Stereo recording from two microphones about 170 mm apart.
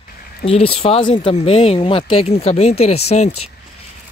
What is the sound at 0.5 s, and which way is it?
Speech, 35° left (ahead or behind).